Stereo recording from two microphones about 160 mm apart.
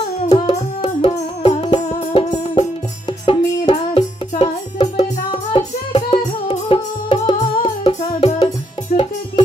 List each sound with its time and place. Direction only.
0.3 s music: 35° left (ahead or behind)
3.3 s music: 35° left (ahead or behind)
8.9 s music: 65° left (ahead or behind)